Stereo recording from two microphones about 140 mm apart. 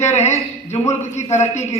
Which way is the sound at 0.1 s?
55° left (ahead or behind).